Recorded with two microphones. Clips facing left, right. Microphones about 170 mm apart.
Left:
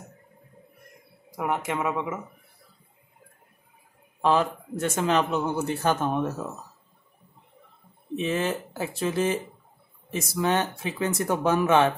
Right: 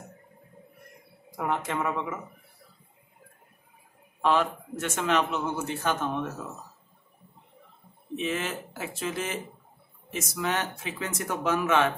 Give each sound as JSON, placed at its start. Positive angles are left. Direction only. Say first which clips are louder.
{"t": 1.3, "sound": "speech", "louder": "left 2 dB", "side_deg": 10}
{"t": 4.2, "sound": "speech", "louder": "left 2 dB", "side_deg": 35}
{"t": 8.2, "sound": "speech", "louder": "left 4 dB", "side_deg": 35}